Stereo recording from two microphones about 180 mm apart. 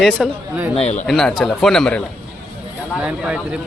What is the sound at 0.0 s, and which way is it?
Speech, 5° right (ahead or behind).